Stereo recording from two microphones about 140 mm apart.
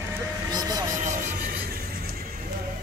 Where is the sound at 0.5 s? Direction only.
25° right (ahead or behind).